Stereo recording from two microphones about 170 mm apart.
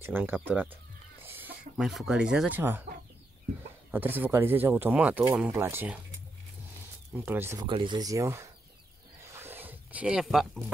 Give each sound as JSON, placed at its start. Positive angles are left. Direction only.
{"t": 0.0, "sound": "speech", "side_deg": -10}
{"t": 3.9, "sound": "speech", "side_deg": -10}
{"t": 7.1, "sound": "speech", "side_deg": -10}
{"t": 7.6, "sound": "speech", "side_deg": -30}
{"t": 9.2, "sound": "a sound", "side_deg": -15}